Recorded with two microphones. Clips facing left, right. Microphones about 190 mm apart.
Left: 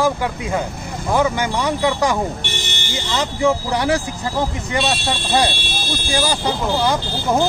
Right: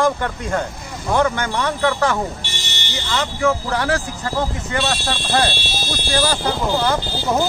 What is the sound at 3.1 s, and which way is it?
Speech, 20° left (ahead or behind).